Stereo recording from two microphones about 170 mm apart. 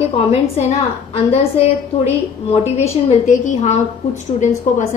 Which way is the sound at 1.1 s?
40° left (ahead or behind).